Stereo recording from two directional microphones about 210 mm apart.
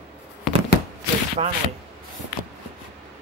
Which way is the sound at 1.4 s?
30° right (ahead or behind).